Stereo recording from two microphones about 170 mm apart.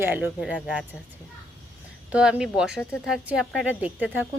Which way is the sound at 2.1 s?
5° right (ahead or behind).